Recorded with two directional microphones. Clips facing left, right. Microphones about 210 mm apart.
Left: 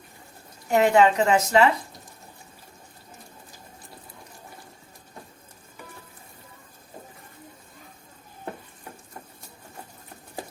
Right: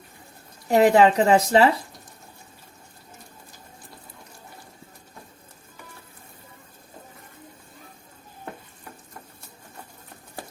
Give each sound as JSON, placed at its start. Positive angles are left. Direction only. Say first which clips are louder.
{"t": 0.7, "sound": "speech", "louder": "right 2 dB", "side_deg": -35}